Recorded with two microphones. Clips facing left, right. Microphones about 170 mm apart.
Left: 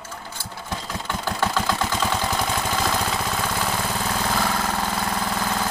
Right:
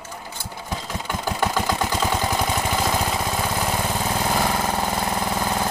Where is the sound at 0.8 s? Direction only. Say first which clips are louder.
Right 1 dB; 15° right (ahead or behind).